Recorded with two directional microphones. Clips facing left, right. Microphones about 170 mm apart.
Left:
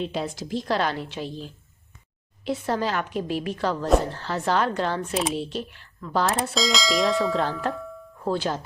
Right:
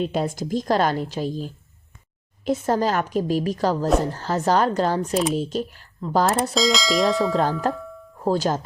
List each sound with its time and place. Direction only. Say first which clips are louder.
0.0 s a woman's voice: right 5 dB; 50° right (ahead or behind)
6.5 s speech: right 3 dB; centre (ahead or behind)
7.7 s music: right 3 dB; centre (ahead or behind)
8.2 s a woman's voice: right 4 dB; 40° right (ahead or behind)